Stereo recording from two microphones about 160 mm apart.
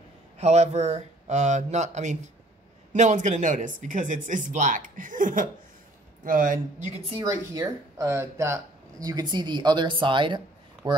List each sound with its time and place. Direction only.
0.4 s speech: 45° right (ahead or behind)
7.2 s speech: 20° right (ahead or behind)